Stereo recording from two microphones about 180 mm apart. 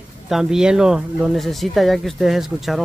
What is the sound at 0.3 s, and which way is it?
Speech, 5° right (ahead or behind).